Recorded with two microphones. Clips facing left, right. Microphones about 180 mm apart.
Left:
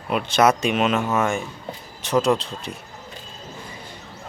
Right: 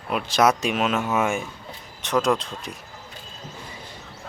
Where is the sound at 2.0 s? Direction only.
35° left (ahead or behind).